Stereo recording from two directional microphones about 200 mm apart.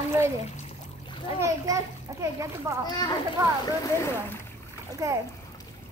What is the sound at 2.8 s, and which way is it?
A child's voice, 20° left (ahead or behind).